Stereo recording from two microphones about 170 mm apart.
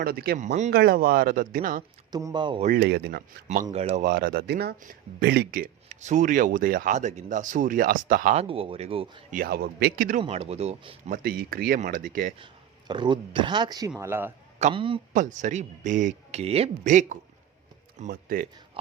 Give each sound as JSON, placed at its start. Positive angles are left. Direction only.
{"t": 0.0, "sound": "speech", "side_deg": -65}
{"t": 0.3, "sound": "speech", "side_deg": -45}
{"t": 0.7, "sound": "speech", "side_deg": -65}
{"t": 2.1, "sound": "speech", "side_deg": -25}
{"t": 2.6, "sound": "speech", "side_deg": -65}
{"t": 8.4, "sound": "speech", "side_deg": -35}
{"t": 9.3, "sound": "speech", "side_deg": -60}
{"t": 10.2, "sound": "speech", "side_deg": -35}
{"t": 11.1, "sound": "speech", "side_deg": -60}
{"t": 12.9, "sound": "speech", "side_deg": -25}
{"t": 14.6, "sound": "speech", "side_deg": -30}
{"t": 15.1, "sound": "speech", "side_deg": -50}
{"t": 18.1, "sound": "speech", "side_deg": -55}